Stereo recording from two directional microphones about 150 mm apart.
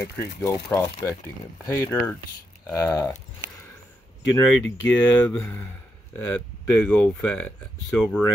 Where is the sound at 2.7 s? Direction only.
25° left (ahead or behind).